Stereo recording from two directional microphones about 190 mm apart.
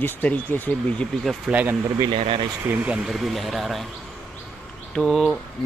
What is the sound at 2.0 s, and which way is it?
Speech, 30° right (ahead or behind).